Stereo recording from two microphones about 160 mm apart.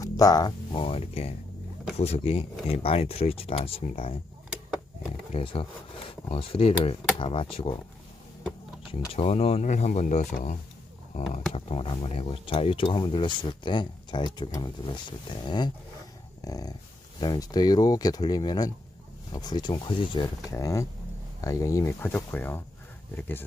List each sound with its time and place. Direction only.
0.0 s speech: 20° left (ahead or behind)
5.3 s speech: 35° left (ahead or behind)
8.9 s speech: 35° left (ahead or behind)
11.5 s speech: 35° left (ahead or behind); by 23.4 s 10° left (ahead or behind)